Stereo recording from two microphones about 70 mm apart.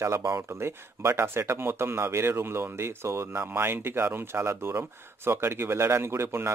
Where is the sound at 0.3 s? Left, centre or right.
Right.